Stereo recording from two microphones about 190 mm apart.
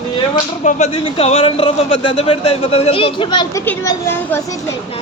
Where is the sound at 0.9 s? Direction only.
30° left (ahead or behind); by 4.5 s 15° left (ahead or behind).